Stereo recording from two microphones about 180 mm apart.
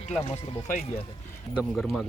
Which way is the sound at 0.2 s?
40° left (ahead or behind).